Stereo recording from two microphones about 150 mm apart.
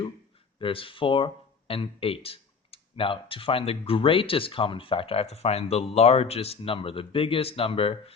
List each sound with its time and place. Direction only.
0.6 s speech: 35° left (ahead or behind)